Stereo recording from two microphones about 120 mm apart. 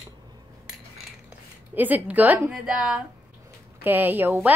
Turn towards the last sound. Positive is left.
turn(degrees=-15)  # may be behind; listen again after turning